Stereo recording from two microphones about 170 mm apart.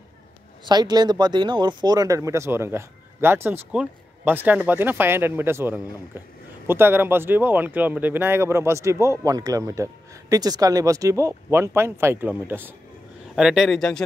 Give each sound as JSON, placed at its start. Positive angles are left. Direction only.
{"t": 0.7, "sound": "a man's voice", "side_deg": -25}